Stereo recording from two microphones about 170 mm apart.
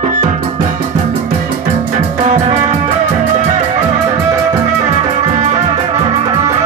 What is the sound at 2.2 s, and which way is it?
Music, 40° right (ahead or behind).